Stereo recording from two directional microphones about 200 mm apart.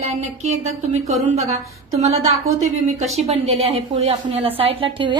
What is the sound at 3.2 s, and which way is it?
A woman's voice, 30° right (ahead or behind).